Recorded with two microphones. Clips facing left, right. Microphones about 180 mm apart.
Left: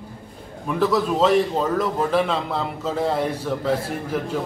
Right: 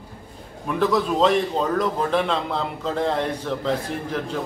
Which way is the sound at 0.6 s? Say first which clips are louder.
Left 1 dB; centre (ahead or behind).